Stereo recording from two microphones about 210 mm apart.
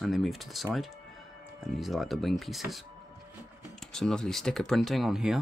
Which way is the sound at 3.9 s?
5° left (ahead or behind).